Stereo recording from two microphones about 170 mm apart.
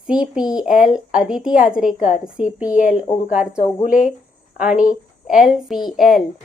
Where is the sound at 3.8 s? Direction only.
50° left (ahead or behind).